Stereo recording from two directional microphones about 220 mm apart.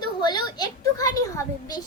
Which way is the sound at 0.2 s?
20° left (ahead or behind).